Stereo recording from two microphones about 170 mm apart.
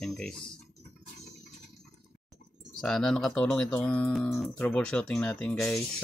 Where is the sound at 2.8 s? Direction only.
5° left (ahead or behind).